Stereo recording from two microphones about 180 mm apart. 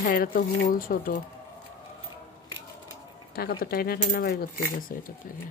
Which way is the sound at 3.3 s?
55° left (ahead or behind).